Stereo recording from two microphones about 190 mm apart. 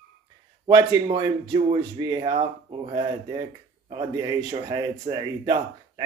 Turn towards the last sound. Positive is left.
turn(degrees=-20)  # may be behind; listen again after turning